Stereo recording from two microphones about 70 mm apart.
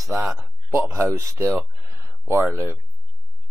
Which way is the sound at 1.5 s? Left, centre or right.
Right.